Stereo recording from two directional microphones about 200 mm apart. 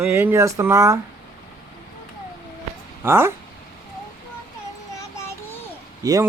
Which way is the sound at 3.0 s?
10° right (ahead or behind).